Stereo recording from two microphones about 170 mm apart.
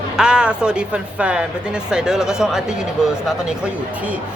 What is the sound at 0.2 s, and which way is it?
Speech, 5° right (ahead or behind).